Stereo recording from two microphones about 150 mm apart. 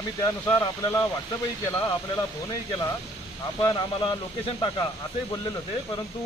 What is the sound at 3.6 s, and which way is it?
Speech, 30° left (ahead or behind).